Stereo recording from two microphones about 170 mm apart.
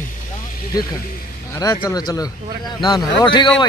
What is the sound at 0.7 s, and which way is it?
A man's voice, 20° left (ahead or behind).